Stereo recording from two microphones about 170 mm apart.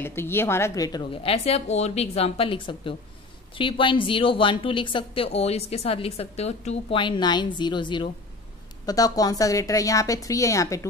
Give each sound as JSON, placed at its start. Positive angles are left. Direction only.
{"t": 0.0, "sound": "a woman's voice", "side_deg": 15}